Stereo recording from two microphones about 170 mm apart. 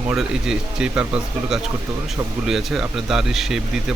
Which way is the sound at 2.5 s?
Centre (ahead or behind).